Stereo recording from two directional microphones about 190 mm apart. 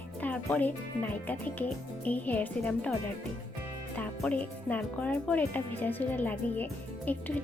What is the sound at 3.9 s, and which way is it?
Speech, 5° left (ahead or behind).